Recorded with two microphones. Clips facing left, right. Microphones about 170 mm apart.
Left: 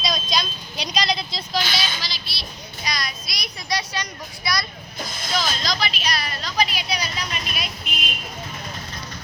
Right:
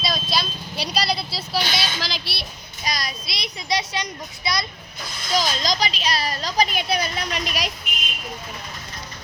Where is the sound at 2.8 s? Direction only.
45° right (ahead or behind).